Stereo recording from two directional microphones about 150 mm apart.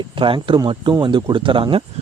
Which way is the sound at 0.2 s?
35° right (ahead or behind).